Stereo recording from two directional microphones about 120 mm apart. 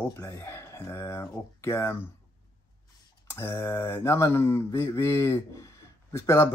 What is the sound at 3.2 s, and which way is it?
Speech, 20° left (ahead or behind).